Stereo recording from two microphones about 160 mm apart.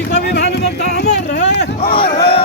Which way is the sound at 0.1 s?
90° left.